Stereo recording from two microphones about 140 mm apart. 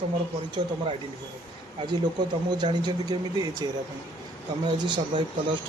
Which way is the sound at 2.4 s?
30° right (ahead or behind).